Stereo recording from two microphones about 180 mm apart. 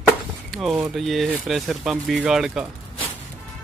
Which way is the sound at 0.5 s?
Centre (ahead or behind).